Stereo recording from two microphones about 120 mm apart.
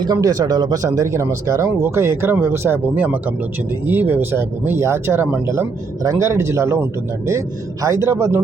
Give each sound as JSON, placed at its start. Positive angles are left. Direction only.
{"t": 0.0, "sound": "speech", "side_deg": -30}
{"t": 6.0, "sound": "speech", "side_deg": -30}